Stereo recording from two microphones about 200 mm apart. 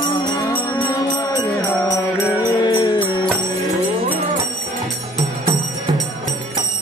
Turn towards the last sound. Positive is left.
turn(degrees=-25)  # may be behind; listen again after turning